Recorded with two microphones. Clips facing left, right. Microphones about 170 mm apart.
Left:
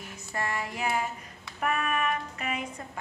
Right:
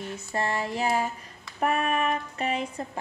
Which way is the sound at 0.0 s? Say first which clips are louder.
Right 5 dB; 30° right (ahead or behind).